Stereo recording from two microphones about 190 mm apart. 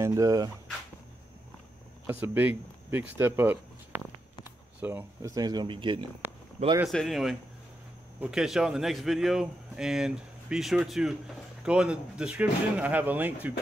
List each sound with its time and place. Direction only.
0.0 s speech: 20° right (ahead or behind)
2.0 s speech: 10° right (ahead or behind)
6.9 s a man's voice: centre (ahead or behind)